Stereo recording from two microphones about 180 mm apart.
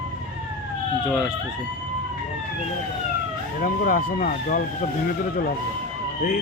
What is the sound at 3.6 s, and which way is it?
Speech, 50° left (ahead or behind).